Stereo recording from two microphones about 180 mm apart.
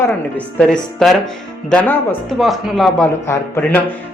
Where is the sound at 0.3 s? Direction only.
5° left (ahead or behind).